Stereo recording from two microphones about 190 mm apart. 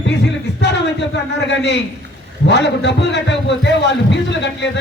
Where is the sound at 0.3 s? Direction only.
65° left (ahead or behind).